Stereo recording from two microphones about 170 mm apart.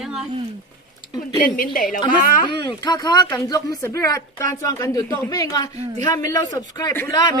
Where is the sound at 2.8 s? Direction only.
25° left (ahead or behind).